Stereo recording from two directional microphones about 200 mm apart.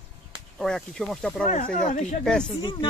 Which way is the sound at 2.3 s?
5° left (ahead or behind).